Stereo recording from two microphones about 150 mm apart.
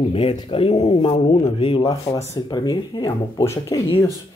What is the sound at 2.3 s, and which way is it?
Speech, 30° left (ahead or behind).